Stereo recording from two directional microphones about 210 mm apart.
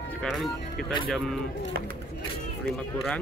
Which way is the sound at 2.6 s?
5° left (ahead or behind).